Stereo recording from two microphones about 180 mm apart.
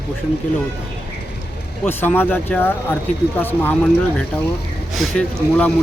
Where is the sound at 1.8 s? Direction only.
10° left (ahead or behind).